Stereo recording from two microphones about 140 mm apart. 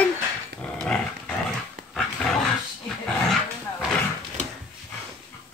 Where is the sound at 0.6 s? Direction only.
10° left (ahead or behind).